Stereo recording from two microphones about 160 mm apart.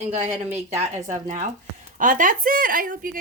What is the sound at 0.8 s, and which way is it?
A woman's voice, 45° right (ahead or behind).